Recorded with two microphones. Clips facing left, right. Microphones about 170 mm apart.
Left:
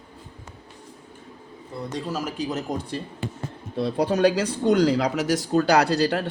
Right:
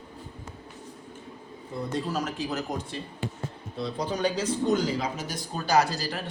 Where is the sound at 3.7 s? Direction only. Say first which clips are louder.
Left 8 dB; 60° left (ahead or behind).